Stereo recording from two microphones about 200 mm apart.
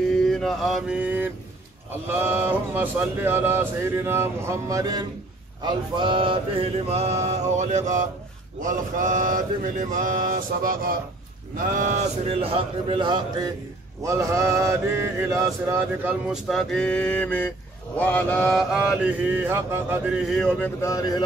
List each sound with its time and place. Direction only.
0.3 s mantra: centre (ahead or behind)
2.1 s speech: 10° right (ahead or behind)
5.6 s mantra: 25° right (ahead or behind); by 10.9 s 45° right (ahead or behind)
11.5 s speech: 40° right (ahead or behind)
14.0 s speech: 15° right (ahead or behind)
16.4 s mantra: centre (ahead or behind)
20.2 s mantra: 5° left (ahead or behind)
20.8 s speech: 20° left (ahead or behind)